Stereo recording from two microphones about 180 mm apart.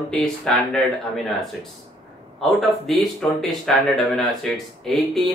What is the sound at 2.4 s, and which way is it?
Speech, centre (ahead or behind).